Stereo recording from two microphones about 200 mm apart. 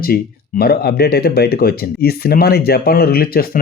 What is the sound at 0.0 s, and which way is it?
Speech, 50° left (ahead or behind).